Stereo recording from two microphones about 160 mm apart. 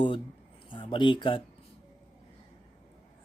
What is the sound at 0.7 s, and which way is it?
Speech, 30° left (ahead or behind).